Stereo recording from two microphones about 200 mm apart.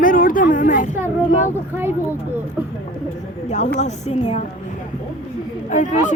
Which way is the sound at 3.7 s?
35° left (ahead or behind).